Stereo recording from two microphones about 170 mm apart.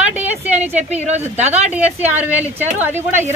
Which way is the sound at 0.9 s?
40° right (ahead or behind).